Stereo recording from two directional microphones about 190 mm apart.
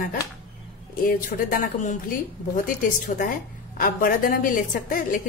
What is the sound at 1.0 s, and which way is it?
A woman's voice, 45° left (ahead or behind).